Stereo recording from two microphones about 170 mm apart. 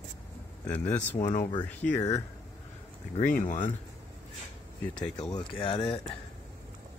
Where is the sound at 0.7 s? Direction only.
10° left (ahead or behind).